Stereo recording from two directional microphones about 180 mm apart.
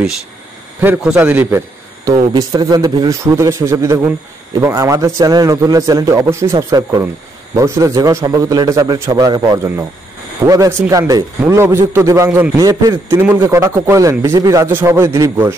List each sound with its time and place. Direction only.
0.8 s a man's voice: 10° right (ahead or behind)
2.0 s a man's voice: 20° right (ahead or behind)